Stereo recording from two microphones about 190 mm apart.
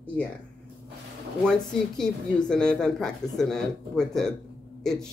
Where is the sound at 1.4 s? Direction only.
5° left (ahead or behind).